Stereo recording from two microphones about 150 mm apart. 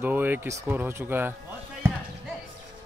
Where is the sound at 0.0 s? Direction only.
10° right (ahead or behind).